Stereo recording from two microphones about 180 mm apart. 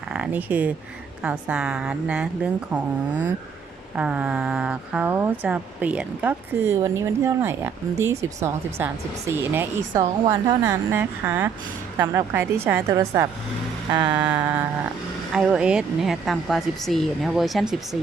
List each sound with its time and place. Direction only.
0.1 s speech: 5° right (ahead or behind)
13.9 s vehicle: 25° right (ahead or behind)
14.2 s speech: 10° right (ahead or behind)